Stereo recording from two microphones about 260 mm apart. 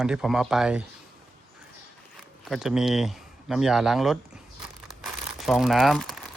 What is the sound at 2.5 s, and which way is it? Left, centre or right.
Speech, centre.